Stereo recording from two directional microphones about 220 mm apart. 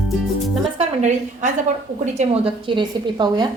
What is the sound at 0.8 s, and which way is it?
A woman's voice, 30° right (ahead or behind).